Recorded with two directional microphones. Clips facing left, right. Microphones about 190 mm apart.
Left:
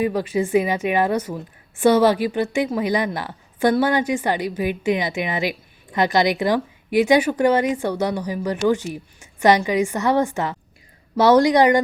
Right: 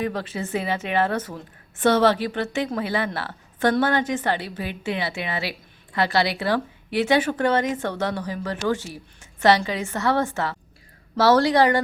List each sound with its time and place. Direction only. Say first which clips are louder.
0.0 s a woman's voice: left 6 dB; 10° left (ahead or behind)